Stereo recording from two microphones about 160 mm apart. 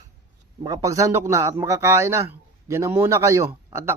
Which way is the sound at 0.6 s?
20° right (ahead or behind).